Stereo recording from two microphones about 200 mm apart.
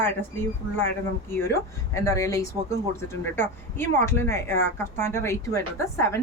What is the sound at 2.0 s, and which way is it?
Speech, 15° left (ahead or behind).